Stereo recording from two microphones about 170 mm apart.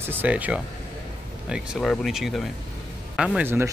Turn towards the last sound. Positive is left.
turn(degrees=-15)  # may be behind; listen again after turning